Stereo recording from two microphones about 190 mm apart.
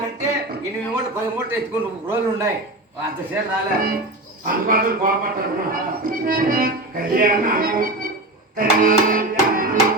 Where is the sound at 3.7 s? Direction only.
50° right (ahead or behind).